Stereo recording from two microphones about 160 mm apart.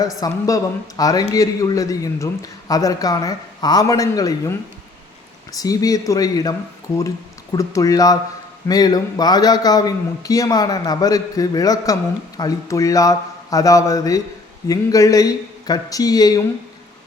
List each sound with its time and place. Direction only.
0.0 s speech: 20° left (ahead or behind)
7.5 s speech: 20° left (ahead or behind)